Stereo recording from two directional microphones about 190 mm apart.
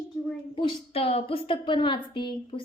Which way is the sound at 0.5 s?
25° left (ahead or behind).